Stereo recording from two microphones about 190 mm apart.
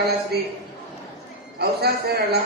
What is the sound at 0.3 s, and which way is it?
Speech, 55° right (ahead or behind).